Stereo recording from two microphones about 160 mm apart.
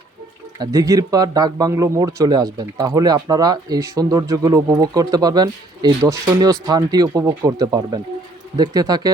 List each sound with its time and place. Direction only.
0.6 s speech: 20° right (ahead or behind)